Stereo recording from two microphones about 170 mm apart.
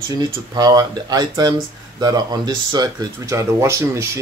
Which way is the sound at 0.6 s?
25° right (ahead or behind).